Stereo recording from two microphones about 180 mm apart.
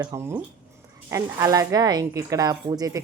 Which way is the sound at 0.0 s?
15° right (ahead or behind).